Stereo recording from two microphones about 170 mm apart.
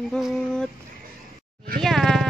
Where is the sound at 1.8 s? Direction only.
Centre (ahead or behind).